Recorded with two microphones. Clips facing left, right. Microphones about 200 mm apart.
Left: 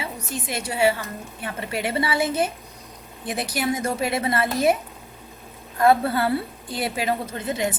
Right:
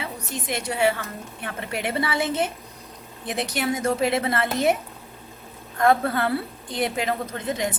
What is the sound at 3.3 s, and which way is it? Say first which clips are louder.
A woman's voice: even; centre (ahead or behind).